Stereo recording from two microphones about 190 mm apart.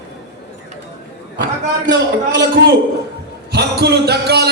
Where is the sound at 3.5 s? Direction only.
60° right (ahead or behind).